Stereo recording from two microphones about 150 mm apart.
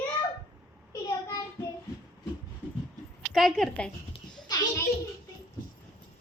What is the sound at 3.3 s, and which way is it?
Speech, centre (ahead or behind).